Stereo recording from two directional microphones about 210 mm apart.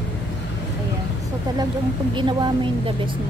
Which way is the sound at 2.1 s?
20° right (ahead or behind).